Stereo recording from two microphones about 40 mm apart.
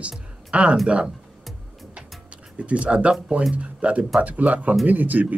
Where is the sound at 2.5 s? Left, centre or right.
Right.